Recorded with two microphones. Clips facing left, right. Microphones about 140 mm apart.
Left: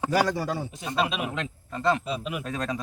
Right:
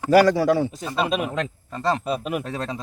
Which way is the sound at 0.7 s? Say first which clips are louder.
Right 3 dB; 45° right (ahead or behind).